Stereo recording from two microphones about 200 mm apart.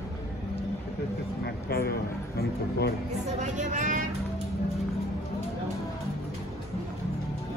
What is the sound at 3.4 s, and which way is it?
Speech, 40° right (ahead or behind).